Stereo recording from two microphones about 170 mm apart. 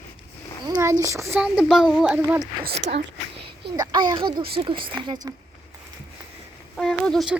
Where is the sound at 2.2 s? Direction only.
15° right (ahead or behind).